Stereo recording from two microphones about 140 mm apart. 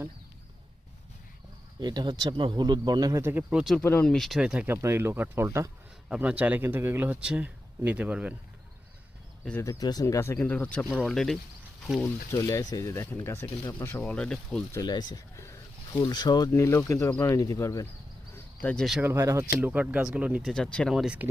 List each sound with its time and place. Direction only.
1.8 s speech: 30° right (ahead or behind)
3.5 s speech: centre (ahead or behind)
3.8 s speech: 10° left (ahead or behind); by 5.7 s 20° right (ahead or behind)
6.1 s speech: 10° right (ahead or behind)
9.4 s speech: 10° left (ahead or behind)
9.6 s speech: 25° left (ahead or behind); by 11.3 s 5° left (ahead or behind)
11.9 s speech: 15° left (ahead or behind)
14.7 s speech: 30° left (ahead or behind)
16.5 s speech: 20° left (ahead or behind)
18.6 s speech: 10° left (ahead or behind)
19.0 s speech: 20° right (ahead or behind)
20.5 s speech: 5° left (ahead or behind)